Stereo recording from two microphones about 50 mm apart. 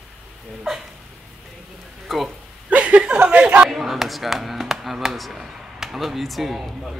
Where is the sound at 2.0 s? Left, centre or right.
Centre.